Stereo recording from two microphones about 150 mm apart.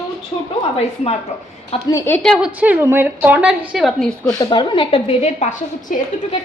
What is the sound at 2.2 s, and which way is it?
A woman's voice, centre (ahead or behind).